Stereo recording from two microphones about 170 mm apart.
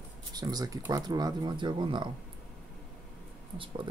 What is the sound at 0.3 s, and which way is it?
Speech, 25° right (ahead or behind).